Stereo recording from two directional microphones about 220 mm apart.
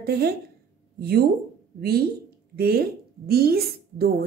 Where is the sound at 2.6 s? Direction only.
45° right (ahead or behind).